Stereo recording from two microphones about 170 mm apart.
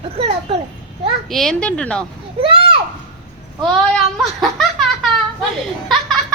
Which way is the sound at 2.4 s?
30° right (ahead or behind).